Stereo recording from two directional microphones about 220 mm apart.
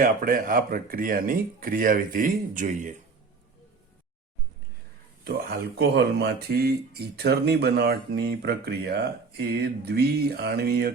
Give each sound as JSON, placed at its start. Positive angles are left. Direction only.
{"t": 0.0, "sound": "speech", "side_deg": -40}
{"t": 5.2, "sound": "speech", "side_deg": -45}